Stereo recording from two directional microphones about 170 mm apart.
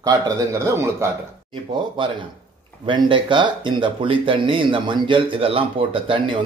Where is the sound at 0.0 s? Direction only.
20° right (ahead or behind).